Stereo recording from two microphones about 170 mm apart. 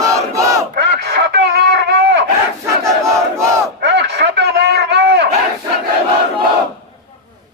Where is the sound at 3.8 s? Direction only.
90° right.